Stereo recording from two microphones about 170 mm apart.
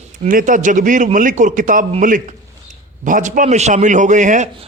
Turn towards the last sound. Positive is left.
turn(degrees=-45)  # may be behind; listen again after turning